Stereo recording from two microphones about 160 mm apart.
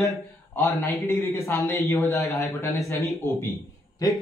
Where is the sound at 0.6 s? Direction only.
15° left (ahead or behind).